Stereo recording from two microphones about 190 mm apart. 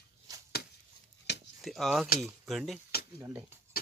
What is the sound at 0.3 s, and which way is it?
Chopping, 20° right (ahead or behind).